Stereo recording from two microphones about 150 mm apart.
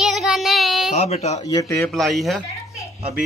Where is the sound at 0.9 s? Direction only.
45° left (ahead or behind).